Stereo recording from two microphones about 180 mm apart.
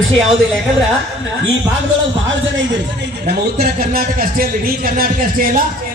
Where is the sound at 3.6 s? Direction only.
55° right (ahead or behind).